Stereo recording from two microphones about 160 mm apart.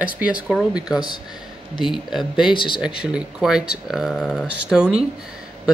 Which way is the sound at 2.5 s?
30° left (ahead or behind).